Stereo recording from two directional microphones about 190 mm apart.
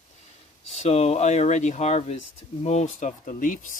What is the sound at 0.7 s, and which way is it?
Speech, 35° left (ahead or behind).